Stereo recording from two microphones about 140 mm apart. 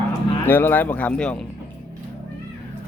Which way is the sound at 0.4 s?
15° left (ahead or behind).